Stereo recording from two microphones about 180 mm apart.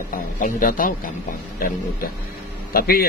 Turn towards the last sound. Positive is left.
turn(degrees=55)  # may be behind; listen again after turning